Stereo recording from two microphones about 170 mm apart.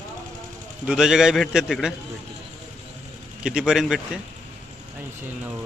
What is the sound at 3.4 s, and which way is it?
Speech, 5° right (ahead or behind).